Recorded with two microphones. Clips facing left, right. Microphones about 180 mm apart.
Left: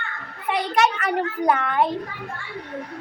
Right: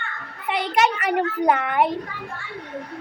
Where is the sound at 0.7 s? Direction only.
15° right (ahead or behind).